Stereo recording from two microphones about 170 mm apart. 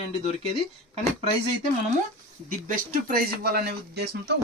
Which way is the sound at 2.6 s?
60° right (ahead or behind).